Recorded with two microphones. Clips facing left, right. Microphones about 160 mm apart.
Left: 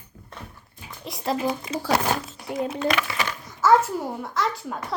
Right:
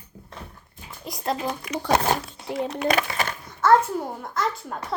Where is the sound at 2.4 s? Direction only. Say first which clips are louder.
Right 1 dB; 25° right (ahead or behind).